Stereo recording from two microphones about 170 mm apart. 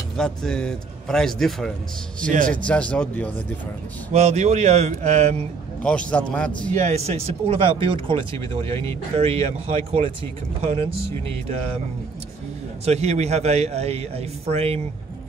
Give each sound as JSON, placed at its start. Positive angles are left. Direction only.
{"t": 0.2, "sound": "a man's voice", "side_deg": 5}
{"t": 2.3, "sound": "a man's voice", "side_deg": -50}
{"t": 2.6, "sound": "a man's voice", "side_deg": 5}
{"t": 4.1, "sound": "speech", "side_deg": -40}
{"t": 5.8, "sound": "a man's voice", "side_deg": 5}
{"t": 6.7, "sound": "speech", "side_deg": -40}
{"t": 12.8, "sound": "speech", "side_deg": -40}